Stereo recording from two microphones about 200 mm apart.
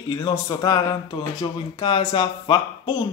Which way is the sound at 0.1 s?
20° left (ahead or behind).